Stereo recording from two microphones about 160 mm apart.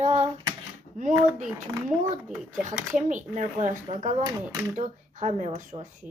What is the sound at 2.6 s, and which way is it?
Speech, 50° right (ahead or behind).